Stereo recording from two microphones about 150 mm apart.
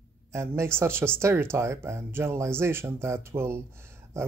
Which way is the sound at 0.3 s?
20° right (ahead or behind).